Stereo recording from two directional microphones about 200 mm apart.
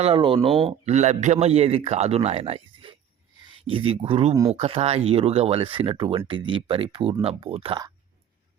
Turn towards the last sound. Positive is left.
turn(degrees=-30)  # may be behind; listen again after turning